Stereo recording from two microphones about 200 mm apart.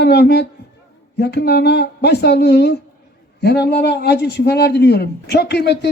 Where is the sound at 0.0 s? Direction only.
55° left (ahead or behind).